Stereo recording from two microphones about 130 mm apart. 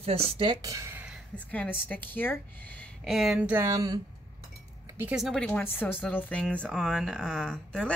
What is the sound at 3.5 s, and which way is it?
Speech, 20° right (ahead or behind).